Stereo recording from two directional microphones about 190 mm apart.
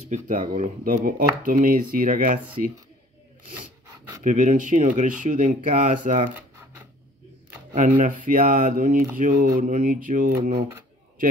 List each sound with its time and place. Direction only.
0.1 s speech: 40° right (ahead or behind)
4.2 s speech: 40° right (ahead or behind)
6.3 s a sound: 10° right (ahead or behind)
8.0 s speech: 45° right (ahead or behind)